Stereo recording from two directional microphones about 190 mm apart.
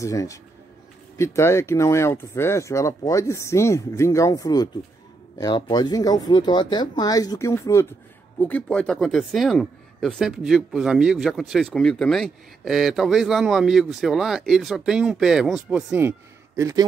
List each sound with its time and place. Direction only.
0.0 s speech: 15° left (ahead or behind); by 16.8 s 15° right (ahead or behind)